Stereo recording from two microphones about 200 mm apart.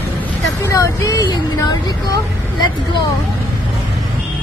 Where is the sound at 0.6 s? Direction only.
15° left (ahead or behind).